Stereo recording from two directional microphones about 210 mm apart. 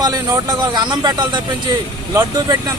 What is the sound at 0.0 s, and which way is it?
Speech, 20° right (ahead or behind).